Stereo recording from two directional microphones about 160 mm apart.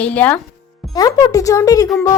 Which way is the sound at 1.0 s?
25° left (ahead or behind).